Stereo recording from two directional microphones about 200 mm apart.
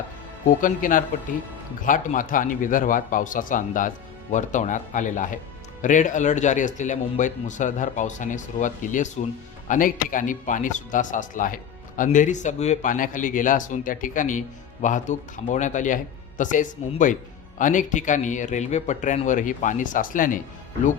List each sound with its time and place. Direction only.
0.6 s speech: 40° left (ahead or behind)